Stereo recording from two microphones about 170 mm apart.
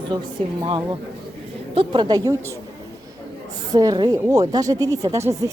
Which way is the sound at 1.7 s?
25° right (ahead or behind).